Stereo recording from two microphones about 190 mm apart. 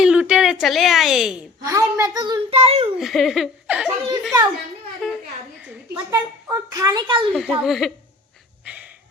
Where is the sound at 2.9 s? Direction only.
Centre (ahead or behind).